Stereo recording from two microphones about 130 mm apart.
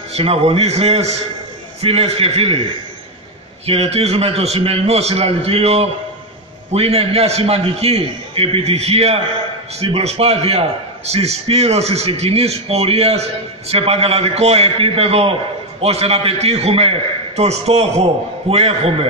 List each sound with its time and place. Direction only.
0.1 s a man's voice: 50° right (ahead or behind)
3.6 s a man's voice: 50° right (ahead or behind)